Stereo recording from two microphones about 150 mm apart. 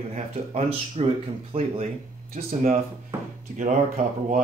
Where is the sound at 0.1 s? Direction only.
45° right (ahead or behind).